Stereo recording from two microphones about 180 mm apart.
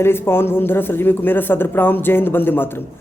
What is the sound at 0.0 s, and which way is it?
Speech, 15° left (ahead or behind).